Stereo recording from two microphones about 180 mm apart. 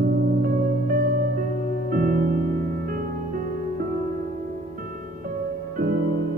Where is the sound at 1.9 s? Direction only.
50° right (ahead or behind).